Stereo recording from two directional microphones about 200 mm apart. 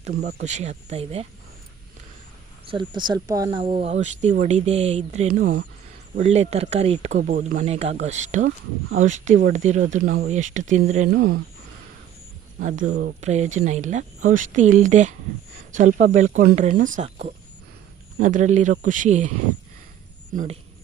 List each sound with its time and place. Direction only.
0.4 s speech: 35° right (ahead or behind)
2.6 s speech: 25° right (ahead or behind); by 5.6 s 45° right (ahead or behind)
6.1 s speech: 35° right (ahead or behind)
11.1 s speech: 50° right (ahead or behind)
12.6 s speech: 40° right (ahead or behind)
20.3 s speech: 40° right (ahead or behind)